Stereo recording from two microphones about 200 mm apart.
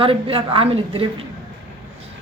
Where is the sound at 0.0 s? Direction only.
30° right (ahead or behind).